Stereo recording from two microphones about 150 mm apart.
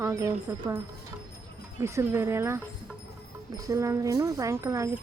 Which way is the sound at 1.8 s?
20° right (ahead or behind).